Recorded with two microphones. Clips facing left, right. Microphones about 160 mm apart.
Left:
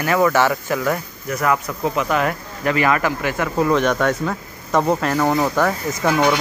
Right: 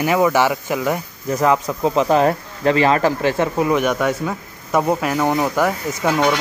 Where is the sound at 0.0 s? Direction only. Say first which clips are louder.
Right 1 dB; 15° right (ahead or behind).